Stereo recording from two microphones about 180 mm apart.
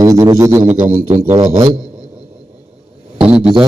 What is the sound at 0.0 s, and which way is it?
Music, 20° right (ahead or behind).